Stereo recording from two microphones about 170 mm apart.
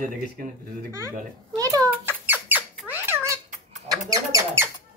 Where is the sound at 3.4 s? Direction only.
50° right (ahead or behind).